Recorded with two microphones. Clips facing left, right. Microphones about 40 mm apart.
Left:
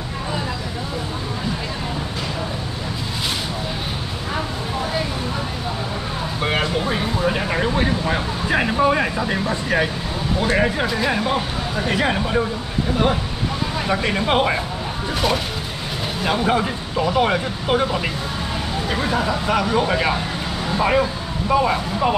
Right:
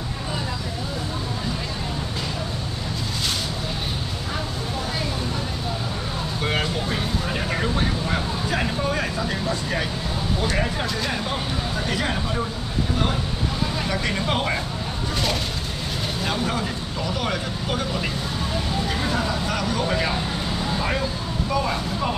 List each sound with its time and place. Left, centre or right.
6.4 s vehicle: centre
10.4 s a sound: left
13.8 s speech: left
16.3 s speech: left
19.0 s speech: centre